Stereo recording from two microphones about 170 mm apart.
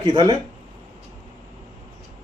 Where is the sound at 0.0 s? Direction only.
25° right (ahead or behind).